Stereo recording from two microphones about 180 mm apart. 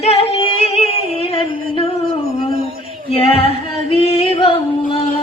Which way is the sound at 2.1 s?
55° right (ahead or behind).